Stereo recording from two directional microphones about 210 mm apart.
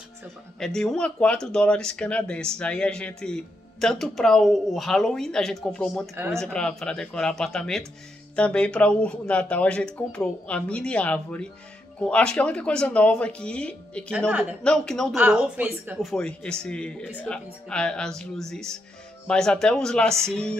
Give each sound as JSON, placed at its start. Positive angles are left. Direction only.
{"t": 0.6, "sound": "speech", "side_deg": 0}
{"t": 6.1, "sound": "speech", "side_deg": -10}
{"t": 6.4, "sound": "speech", "side_deg": 5}